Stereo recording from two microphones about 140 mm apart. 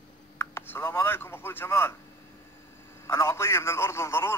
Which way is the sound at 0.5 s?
15° left (ahead or behind).